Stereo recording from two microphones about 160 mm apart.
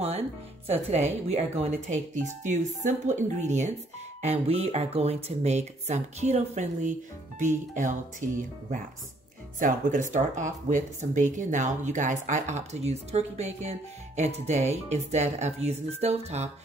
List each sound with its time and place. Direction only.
0.7 s speech: 45° right (ahead or behind)